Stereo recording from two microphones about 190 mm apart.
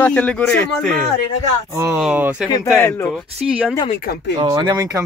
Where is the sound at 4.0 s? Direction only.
55° left (ahead or behind).